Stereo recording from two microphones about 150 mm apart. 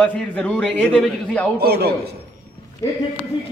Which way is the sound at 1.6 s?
90° right.